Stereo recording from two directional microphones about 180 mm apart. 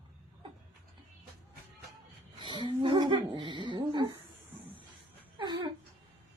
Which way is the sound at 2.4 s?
25° right (ahead or behind).